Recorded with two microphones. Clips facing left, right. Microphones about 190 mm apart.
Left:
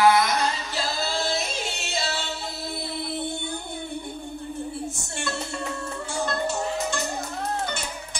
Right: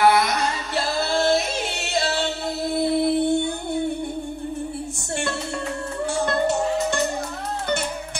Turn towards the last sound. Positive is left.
turn(degrees=-60)  # may be behind; listen again after turning